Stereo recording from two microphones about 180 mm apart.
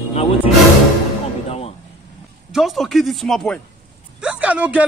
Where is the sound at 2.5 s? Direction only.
Centre (ahead or behind).